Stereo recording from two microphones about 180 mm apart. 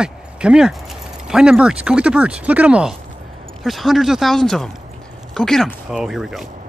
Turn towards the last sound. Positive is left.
turn(degrees=0)  # may be behind; listen again after turning